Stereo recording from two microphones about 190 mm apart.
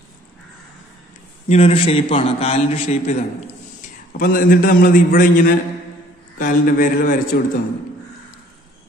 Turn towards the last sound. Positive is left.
turn(degrees=55)  # may be behind; listen again after turning